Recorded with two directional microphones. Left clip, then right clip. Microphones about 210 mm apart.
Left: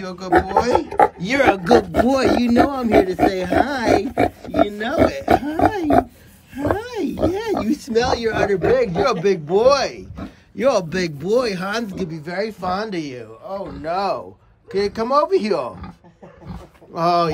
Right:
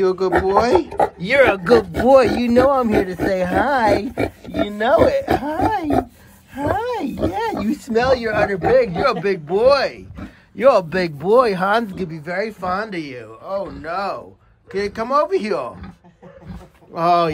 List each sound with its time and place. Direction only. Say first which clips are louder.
0.0 s speech: right 2 dB; centre (ahead or behind)
6.5 s a sound: right 2 dB; centre (ahead or behind)
7.7 s speech: right 3 dB; 5° right (ahead or behind); by 15.7 s 15° left (ahead or behind)
16.9 s speech: right 2 dB; 5° left (ahead or behind)